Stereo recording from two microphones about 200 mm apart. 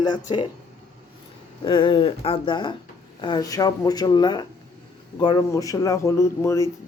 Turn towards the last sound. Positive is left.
turn(degrees=15)  # may be behind; listen again after turning